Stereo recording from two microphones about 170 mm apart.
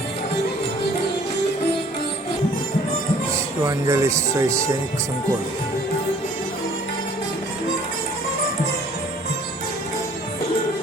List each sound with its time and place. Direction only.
3.7 s speech: 20° right (ahead or behind)